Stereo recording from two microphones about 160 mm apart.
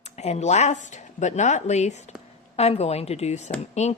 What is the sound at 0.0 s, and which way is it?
Speech, 45° left (ahead or behind).